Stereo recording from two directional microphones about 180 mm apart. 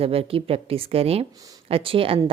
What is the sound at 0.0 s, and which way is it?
A woman's voice, 30° right (ahead or behind).